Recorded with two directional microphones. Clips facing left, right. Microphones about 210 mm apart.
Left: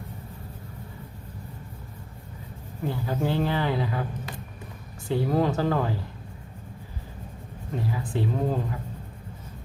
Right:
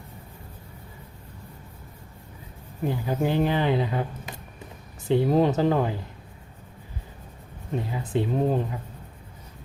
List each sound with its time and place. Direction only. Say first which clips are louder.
2.8 s speech: right 2 dB; 15° right (ahead or behind)
7.7 s speech: right 2 dB; 20° right (ahead or behind)